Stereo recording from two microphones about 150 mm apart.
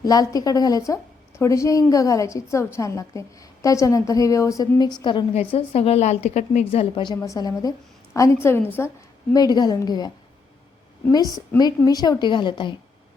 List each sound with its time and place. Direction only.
0.0 s a woman's voice: 25° left (ahead or behind)
5.3 s a woman's voice: 40° left (ahead or behind); by 8.9 s 15° left (ahead or behind)
9.3 s a woman's voice: 25° left (ahead or behind)
11.5 s a woman's voice: 25° left (ahead or behind)